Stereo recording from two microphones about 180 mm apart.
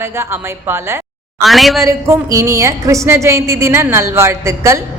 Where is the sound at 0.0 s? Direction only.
15° right (ahead or behind).